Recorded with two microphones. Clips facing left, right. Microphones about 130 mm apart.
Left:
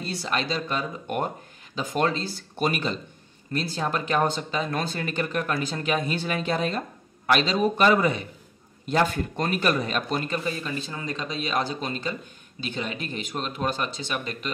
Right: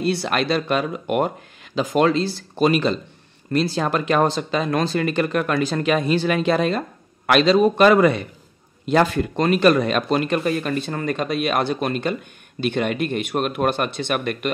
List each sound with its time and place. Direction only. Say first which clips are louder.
0.0 s speech: right 7 dB; 70° right (ahead or behind)